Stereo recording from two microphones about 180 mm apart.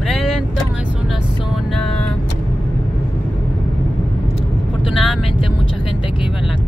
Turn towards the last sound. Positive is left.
turn(degrees=0)  # may be behind; listen again after turning